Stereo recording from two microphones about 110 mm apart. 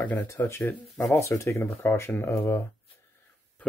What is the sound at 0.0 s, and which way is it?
Speech, 15° left (ahead or behind).